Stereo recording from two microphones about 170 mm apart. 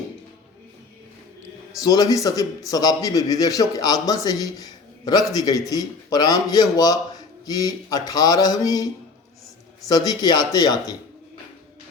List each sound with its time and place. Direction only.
1.8 s a man's voice: 20° left (ahead or behind)
9.9 s a man's voice: 25° left (ahead or behind)